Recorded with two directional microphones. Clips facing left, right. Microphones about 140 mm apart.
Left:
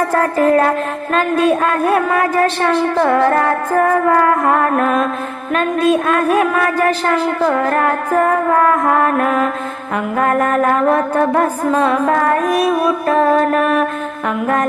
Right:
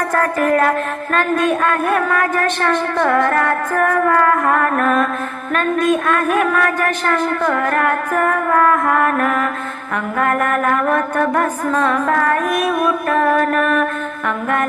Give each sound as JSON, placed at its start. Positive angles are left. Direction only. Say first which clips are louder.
{"t": 0.1, "sound": "music", "louder": "left 2 dB", "side_deg": 30}
{"t": 3.2, "sound": "music", "louder": "left 2 dB", "side_deg": 30}